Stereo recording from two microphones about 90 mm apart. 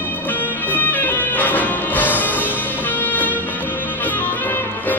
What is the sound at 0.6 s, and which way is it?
Music, 20° left (ahead or behind).